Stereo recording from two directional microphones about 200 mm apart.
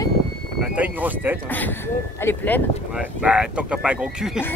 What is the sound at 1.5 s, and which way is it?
Speech, 10° left (ahead or behind).